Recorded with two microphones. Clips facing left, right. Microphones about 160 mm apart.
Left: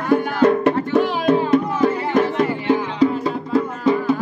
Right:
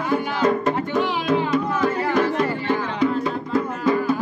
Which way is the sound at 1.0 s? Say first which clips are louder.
Left 3 dB; 50° left (ahead or behind).